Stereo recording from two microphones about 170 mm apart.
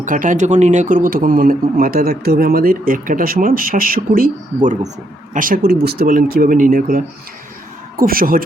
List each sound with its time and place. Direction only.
0.0 s speech: 50° right (ahead or behind)